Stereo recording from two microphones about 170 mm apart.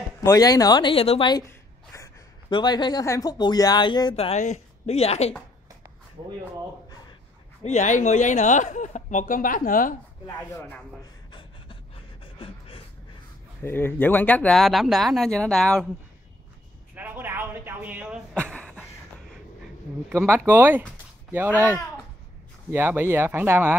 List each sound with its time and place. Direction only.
0.2 s speech: 20° left (ahead or behind)
2.5 s speech: 25° left (ahead or behind)
7.6 s speech: 45° left (ahead or behind)
10.2 s speech: 15° left (ahead or behind)
11.3 s pant: 30° left (ahead or behind)
13.6 s speech: 15° left (ahead or behind)
16.9 s a sound: 10° right (ahead or behind)
18.3 s a sound: 5° left (ahead or behind)
20.1 s speech: 15° right (ahead or behind)
22.7 s speech: 10° right (ahead or behind)